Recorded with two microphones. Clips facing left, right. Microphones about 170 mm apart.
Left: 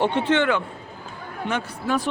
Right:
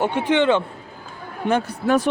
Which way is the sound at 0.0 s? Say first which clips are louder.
Right 2 dB; 10° right (ahead or behind).